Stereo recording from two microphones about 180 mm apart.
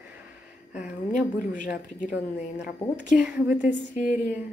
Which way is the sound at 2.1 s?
5° right (ahead or behind).